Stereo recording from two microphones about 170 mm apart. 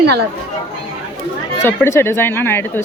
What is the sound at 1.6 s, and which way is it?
Speech, 15° left (ahead or behind).